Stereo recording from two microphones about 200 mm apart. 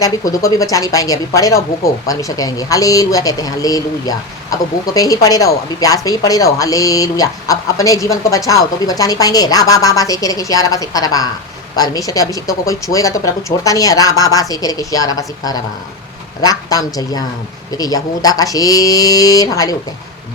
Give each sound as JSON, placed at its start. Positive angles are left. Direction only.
{"t": 0.0, "sound": "a woman's voice", "side_deg": 15}